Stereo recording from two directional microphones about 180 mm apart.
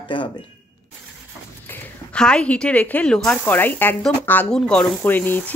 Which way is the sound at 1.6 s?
10° left (ahead or behind).